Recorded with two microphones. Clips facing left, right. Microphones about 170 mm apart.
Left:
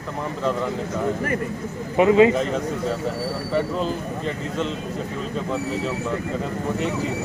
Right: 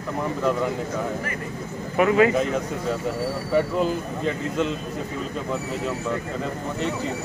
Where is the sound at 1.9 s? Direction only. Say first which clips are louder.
Left 3 dB; 25° left (ahead or behind).